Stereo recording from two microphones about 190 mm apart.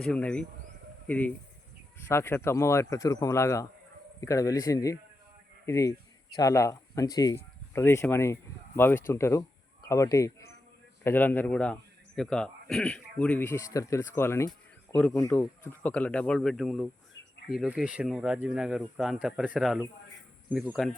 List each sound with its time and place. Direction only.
0.0 s a man's voice: 5° left (ahead or behind)